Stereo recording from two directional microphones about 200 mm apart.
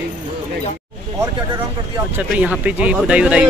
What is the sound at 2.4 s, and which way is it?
Speech, 5° right (ahead or behind).